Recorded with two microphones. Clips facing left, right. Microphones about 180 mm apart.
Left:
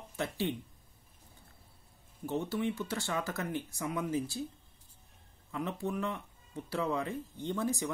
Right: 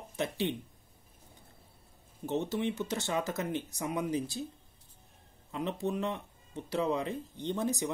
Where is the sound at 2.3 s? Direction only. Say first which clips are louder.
Right 1 dB; 20° right (ahead or behind).